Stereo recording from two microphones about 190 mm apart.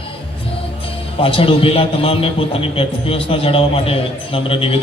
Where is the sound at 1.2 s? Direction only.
30° left (ahead or behind).